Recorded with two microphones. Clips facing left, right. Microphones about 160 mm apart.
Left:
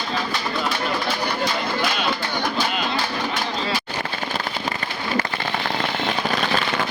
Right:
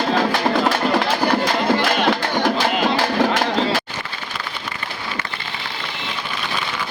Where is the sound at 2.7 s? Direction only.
60° right (ahead or behind); by 3.6 s 75° right (ahead or behind).